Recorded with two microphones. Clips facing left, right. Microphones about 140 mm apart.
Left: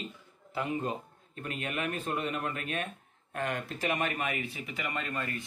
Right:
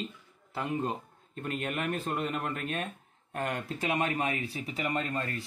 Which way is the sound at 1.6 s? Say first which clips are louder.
Even; 35° right (ahead or behind).